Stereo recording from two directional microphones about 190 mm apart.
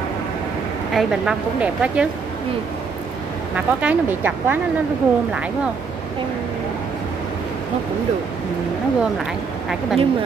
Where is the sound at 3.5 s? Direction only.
10° right (ahead or behind).